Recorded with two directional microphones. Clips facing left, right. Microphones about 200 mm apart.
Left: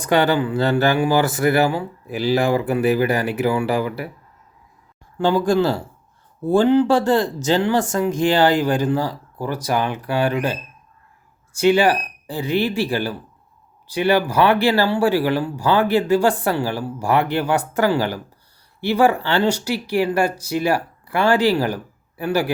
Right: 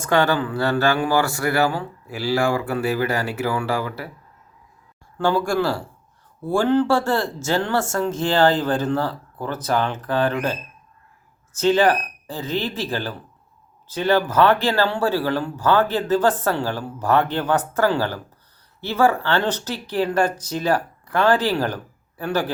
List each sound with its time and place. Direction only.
0.0 s speech: 15° left (ahead or behind)
5.1 s speech: 15° left (ahead or behind)